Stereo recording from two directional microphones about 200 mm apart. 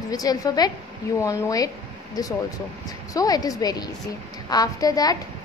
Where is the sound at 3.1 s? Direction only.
20° left (ahead or behind).